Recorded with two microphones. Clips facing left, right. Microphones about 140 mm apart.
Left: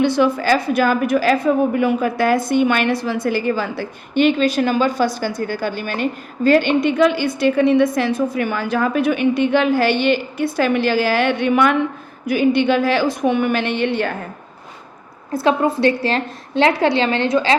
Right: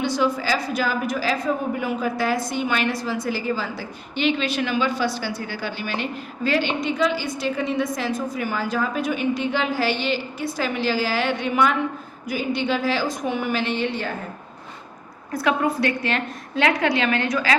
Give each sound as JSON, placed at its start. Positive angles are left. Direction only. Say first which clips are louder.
{"t": 0.0, "sound": "a woman's voice", "louder": "left 6 dB", "side_deg": 60}
{"t": 15.3, "sound": "a woman's voice", "louder": "left 5 dB", "side_deg": 25}